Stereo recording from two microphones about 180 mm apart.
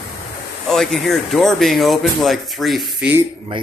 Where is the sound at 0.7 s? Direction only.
Centre (ahead or behind).